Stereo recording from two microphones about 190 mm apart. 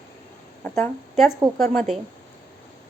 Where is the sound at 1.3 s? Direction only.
15° right (ahead or behind).